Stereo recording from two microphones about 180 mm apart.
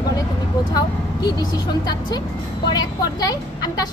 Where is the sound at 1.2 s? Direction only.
20° left (ahead or behind).